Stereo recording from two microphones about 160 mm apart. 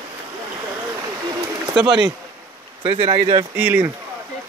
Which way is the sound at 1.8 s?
30° right (ahead or behind).